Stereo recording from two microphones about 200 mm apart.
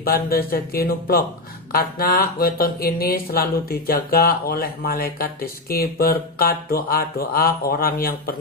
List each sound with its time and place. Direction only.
0.0 s speech: 50° left (ahead or behind)